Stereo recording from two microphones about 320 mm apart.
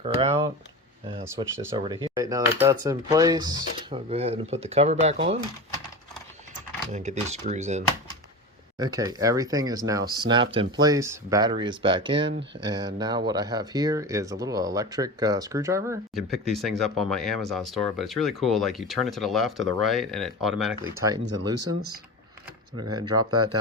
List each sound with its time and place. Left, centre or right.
0.0 s speech: centre
6.5 s speech: right
8.8 s speech: centre
23.0 s speech: centre
23.3 s speech: right